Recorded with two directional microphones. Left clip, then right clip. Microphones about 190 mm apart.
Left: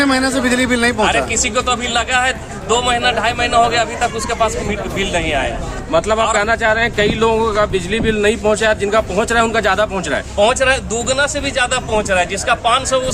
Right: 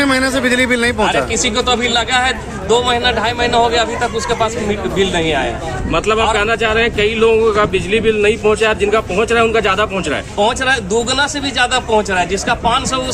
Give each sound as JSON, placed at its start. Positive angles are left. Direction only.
{"t": 0.0, "sound": "a man's voice", "side_deg": 0}
{"t": 5.9, "sound": "speech", "side_deg": 55}
{"t": 10.3, "sound": "a man's voice", "side_deg": 10}